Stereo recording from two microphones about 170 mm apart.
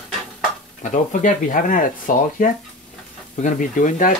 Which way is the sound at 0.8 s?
50° left (ahead or behind).